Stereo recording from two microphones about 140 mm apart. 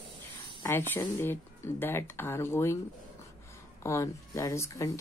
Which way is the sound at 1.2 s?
15° left (ahead or behind).